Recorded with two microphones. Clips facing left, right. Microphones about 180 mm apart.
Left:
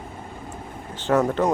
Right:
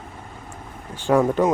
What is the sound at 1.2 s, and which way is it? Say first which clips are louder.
Speech: right 3 dB; 10° right (ahead or behind).